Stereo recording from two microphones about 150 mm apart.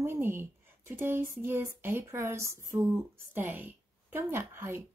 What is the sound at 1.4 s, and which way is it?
A woman's voice, 15° right (ahead or behind).